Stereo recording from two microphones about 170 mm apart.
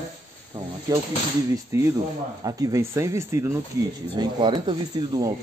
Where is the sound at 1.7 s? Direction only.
20° right (ahead or behind).